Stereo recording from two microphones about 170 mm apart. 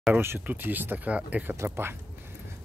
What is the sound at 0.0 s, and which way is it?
Speech, 10° right (ahead or behind).